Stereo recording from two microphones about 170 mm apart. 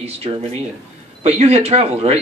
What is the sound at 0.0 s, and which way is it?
Speech, 35° right (ahead or behind).